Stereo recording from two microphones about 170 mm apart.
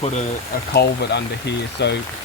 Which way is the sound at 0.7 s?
75° left (ahead or behind).